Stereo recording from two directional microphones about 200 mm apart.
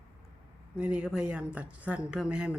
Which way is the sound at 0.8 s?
5° right (ahead or behind).